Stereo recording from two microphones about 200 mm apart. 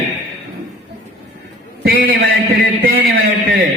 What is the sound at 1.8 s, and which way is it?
A man's voice, 45° right (ahead or behind).